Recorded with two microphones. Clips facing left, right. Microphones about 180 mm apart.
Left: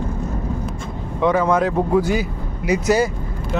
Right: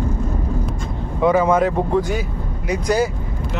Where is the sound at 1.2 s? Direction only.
5° right (ahead or behind).